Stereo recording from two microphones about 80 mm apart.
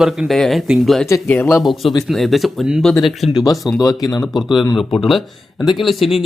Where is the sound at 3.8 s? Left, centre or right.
Left.